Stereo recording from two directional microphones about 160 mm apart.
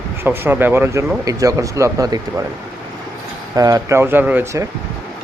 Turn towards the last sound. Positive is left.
turn(degrees=-15)  # may be behind; listen again after turning